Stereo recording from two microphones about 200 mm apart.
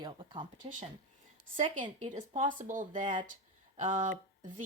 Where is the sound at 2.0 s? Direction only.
35° right (ahead or behind).